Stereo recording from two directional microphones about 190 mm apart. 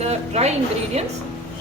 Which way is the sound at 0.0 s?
35° right (ahead or behind).